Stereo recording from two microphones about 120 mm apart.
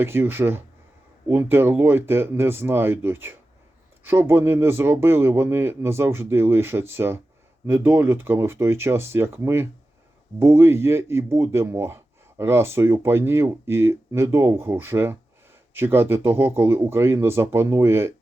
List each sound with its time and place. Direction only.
0.0 s speech: 20° right (ahead or behind)